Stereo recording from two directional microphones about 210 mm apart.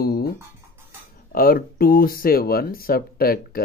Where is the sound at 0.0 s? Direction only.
45° left (ahead or behind).